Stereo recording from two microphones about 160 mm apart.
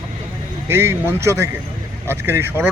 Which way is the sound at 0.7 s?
15° right (ahead or behind).